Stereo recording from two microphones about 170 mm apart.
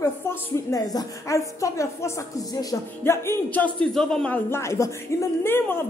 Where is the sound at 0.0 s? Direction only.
20° left (ahead or behind).